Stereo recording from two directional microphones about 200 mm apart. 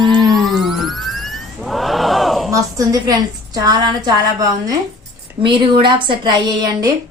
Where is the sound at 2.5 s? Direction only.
15° right (ahead or behind).